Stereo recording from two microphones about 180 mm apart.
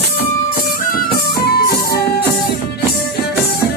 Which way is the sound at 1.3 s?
60° left (ahead or behind).